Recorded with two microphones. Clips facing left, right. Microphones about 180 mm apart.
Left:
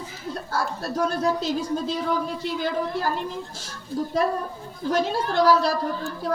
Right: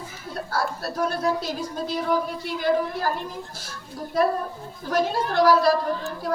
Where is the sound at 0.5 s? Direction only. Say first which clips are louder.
Even; 25° left (ahead or behind).